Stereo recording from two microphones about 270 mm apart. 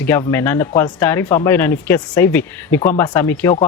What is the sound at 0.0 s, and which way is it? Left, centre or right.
Speech, centre.